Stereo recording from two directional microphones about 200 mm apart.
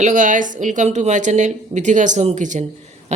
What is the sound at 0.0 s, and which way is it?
Speech, 40° right (ahead or behind).